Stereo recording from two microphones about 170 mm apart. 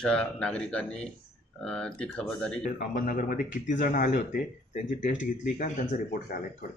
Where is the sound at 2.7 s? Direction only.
55° left (ahead or behind).